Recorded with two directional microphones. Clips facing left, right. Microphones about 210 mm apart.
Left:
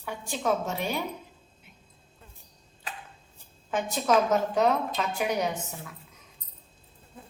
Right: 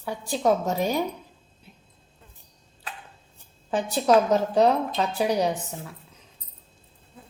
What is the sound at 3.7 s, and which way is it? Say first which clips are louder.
A woman's voice: right 4 dB; 35° right (ahead or behind).